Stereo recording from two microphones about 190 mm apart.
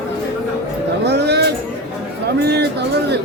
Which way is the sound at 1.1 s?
60° right (ahead or behind).